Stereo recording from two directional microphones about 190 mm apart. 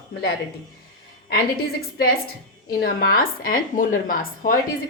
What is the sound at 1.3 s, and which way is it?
A woman's voice, 55° left (ahead or behind).